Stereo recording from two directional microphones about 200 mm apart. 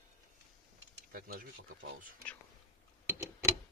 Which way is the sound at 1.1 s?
50° right (ahead or behind).